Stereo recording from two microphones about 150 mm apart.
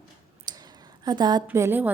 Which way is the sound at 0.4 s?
25° right (ahead or behind).